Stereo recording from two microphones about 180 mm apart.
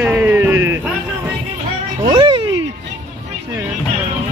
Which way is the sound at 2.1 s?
25° right (ahead or behind).